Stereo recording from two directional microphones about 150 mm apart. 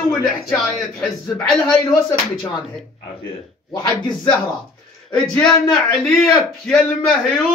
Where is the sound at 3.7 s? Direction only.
25° left (ahead or behind).